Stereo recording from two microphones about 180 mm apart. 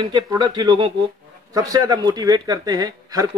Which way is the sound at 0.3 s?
20° right (ahead or behind).